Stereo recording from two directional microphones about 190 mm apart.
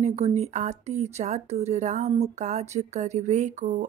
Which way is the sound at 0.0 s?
35° right (ahead or behind).